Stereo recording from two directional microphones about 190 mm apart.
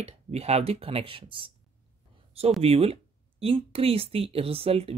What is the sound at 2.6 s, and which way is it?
Speech, 30° right (ahead or behind).